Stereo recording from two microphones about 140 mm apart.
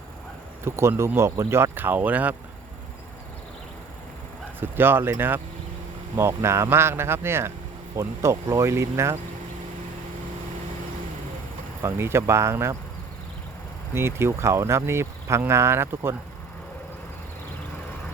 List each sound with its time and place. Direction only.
0.6 s speech: 20° right (ahead or behind)
4.6 s speech: 15° right (ahead or behind)
11.8 s speech: 15° right (ahead or behind)
13.9 s speech: 20° right (ahead or behind)